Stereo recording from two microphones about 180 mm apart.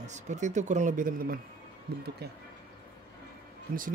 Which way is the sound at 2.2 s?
65° right (ahead or behind).